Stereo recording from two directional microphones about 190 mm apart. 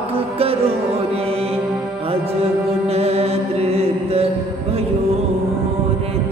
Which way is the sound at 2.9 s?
35° right (ahead or behind).